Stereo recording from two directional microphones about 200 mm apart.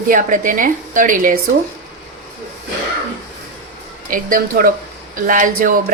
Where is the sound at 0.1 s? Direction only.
40° right (ahead or behind).